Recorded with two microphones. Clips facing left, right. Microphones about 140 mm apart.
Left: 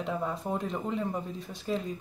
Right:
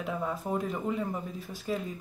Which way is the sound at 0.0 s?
Centre (ahead or behind).